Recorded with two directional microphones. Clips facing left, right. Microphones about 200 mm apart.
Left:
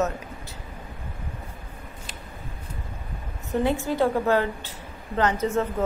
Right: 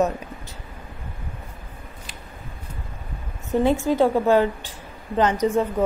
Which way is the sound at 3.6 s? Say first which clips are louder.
Right 4 dB; 15° right (ahead or behind).